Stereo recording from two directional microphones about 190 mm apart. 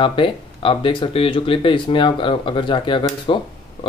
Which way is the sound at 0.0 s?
25° left (ahead or behind).